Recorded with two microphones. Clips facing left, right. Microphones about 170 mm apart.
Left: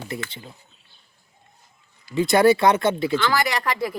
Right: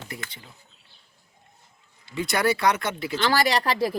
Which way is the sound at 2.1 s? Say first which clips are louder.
Left 8 dB; 25° left (ahead or behind).